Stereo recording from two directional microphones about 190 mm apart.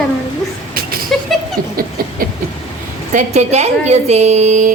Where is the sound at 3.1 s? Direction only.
35° right (ahead or behind).